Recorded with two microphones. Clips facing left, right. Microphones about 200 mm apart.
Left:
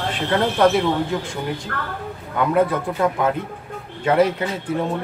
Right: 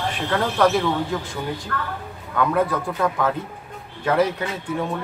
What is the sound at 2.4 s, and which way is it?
A man's voice, 25° left (ahead or behind).